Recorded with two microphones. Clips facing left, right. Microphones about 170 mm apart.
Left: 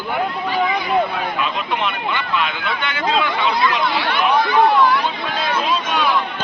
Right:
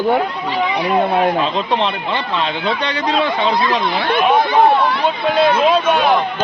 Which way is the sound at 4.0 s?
50° right (ahead or behind).